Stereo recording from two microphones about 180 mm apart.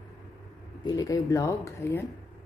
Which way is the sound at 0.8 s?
20° left (ahead or behind).